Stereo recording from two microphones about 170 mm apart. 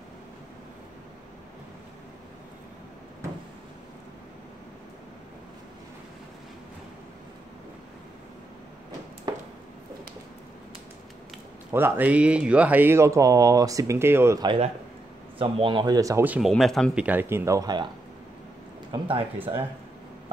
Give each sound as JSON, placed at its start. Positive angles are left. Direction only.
{"t": 11.7, "sound": "speech", "side_deg": -10}
{"t": 15.3, "sound": "speech", "side_deg": -30}
{"t": 18.9, "sound": "speech", "side_deg": -30}